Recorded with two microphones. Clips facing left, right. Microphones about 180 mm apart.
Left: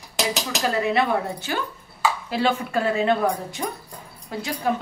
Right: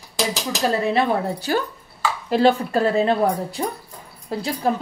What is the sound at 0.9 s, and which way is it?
A woman's voice, 35° right (ahead or behind).